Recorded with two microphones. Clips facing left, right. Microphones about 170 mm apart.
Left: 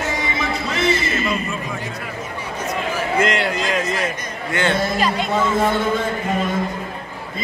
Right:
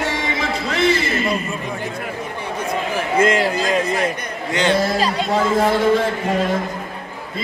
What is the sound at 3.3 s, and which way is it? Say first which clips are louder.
Speech: right 3 dB; 35° right (ahead or behind).